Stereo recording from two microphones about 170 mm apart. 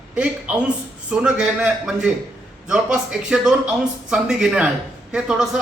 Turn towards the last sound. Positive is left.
turn(degrees=-5)  # may be behind; listen again after turning